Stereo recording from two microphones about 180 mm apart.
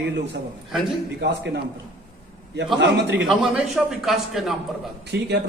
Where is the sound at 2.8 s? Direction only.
80° right.